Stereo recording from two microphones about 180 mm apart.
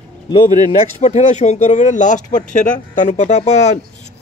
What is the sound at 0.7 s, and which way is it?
Speech, 40° left (ahead or behind).